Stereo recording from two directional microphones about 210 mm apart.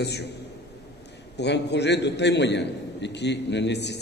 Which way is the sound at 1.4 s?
55° left (ahead or behind).